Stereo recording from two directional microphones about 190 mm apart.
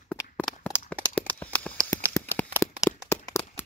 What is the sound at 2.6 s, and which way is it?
Crack, 15° left (ahead or behind).